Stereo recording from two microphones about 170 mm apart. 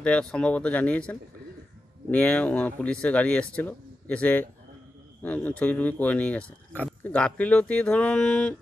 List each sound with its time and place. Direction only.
0.0 s speech: 5° left (ahead or behind)